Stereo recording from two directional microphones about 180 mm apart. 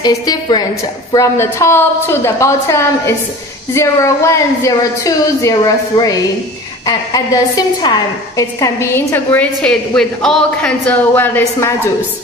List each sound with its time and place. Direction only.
0.0 s a woman's voice: 20° left (ahead or behind)